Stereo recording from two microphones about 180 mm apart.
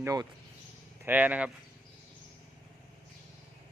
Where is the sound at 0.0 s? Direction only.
20° right (ahead or behind).